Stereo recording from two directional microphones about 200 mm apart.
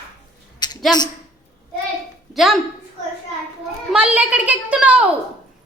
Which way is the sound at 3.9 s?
5° right (ahead or behind).